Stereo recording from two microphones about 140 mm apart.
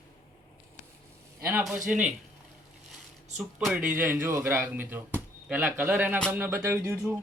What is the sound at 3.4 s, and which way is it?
Speech, 5° right (ahead or behind).